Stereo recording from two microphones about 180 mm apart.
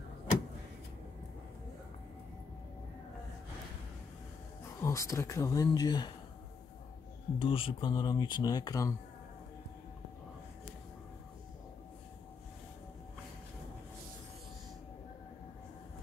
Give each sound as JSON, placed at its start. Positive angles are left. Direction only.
{"t": 4.7, "sound": "speech", "side_deg": 15}
{"t": 7.3, "sound": "speech", "side_deg": 30}